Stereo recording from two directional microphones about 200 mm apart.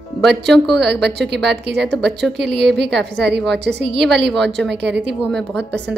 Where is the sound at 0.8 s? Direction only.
55° right (ahead or behind).